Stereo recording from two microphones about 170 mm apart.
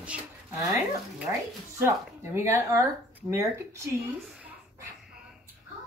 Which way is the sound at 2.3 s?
15° right (ahead or behind).